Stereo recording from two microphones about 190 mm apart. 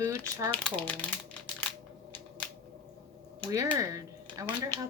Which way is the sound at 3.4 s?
15° right (ahead or behind).